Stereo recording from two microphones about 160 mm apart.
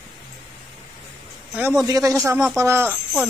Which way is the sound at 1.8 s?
20° right (ahead or behind).